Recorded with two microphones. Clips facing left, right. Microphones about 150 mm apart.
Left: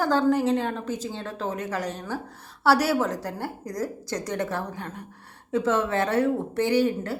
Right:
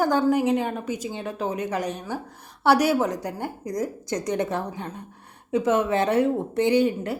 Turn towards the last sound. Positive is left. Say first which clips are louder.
# right 2 dB
turn(degrees=-20)  # may be behind; listen again after turning